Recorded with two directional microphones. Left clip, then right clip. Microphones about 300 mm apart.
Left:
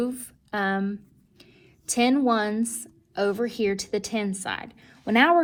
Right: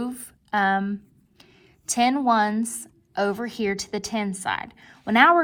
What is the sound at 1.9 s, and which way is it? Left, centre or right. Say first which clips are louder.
A woman's voice: right 2 dB; right.